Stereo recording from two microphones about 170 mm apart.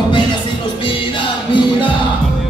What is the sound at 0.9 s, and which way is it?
Music, 30° left (ahead or behind).